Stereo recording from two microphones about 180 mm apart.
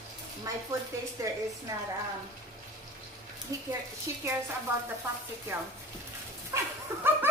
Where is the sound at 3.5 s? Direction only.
20° right (ahead or behind).